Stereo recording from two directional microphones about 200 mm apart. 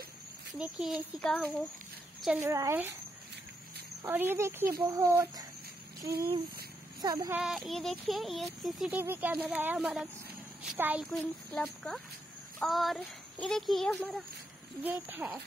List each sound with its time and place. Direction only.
0.5 s speech: centre (ahead or behind)
2.4 s speech: 15° right (ahead or behind)
4.0 s speech: 10° right (ahead or behind)
7.3 s speech: centre (ahead or behind)
11.1 s speech: 5° left (ahead or behind)
14.8 s speech: 10° right (ahead or behind)